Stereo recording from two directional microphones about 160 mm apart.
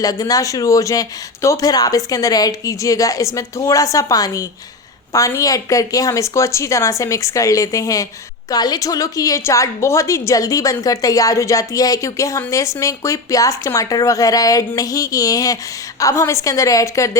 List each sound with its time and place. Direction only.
0.0 s a woman's voice: 25° left (ahead or behind)